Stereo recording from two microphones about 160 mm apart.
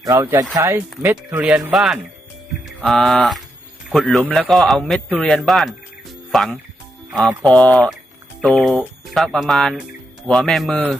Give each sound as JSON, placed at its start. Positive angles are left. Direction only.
{"t": 0.1, "sound": "a man's voice", "side_deg": -20}